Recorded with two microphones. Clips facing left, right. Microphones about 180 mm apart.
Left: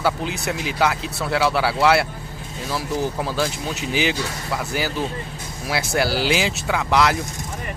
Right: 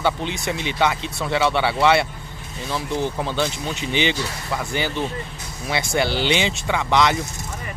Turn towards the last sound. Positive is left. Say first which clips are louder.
# even
turn(degrees=5)  # may be behind; listen again after turning